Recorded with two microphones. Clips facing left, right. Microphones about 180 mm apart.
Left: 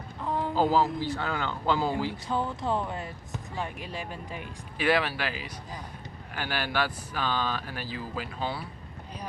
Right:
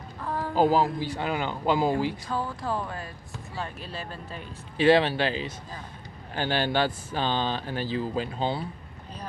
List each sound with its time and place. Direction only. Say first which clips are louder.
0.2 s a sound: left 1 dB; 20° left (ahead or behind)
0.5 s speech: right 3 dB; 15° right (ahead or behind)
2.2 s speech: left 1 dB; 20° left (ahead or behind)
4.8 s speech: right 6 dB; 25° right (ahead or behind)